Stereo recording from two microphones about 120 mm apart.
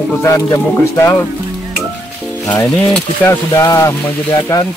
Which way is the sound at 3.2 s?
10° left (ahead or behind).